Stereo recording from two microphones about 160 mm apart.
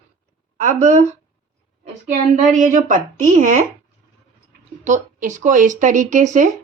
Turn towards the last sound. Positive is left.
turn(degrees=-50)  # may be behind; listen again after turning